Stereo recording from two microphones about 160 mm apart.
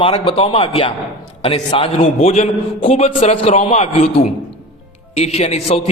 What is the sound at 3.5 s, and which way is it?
A man's voice, 50° left (ahead or behind).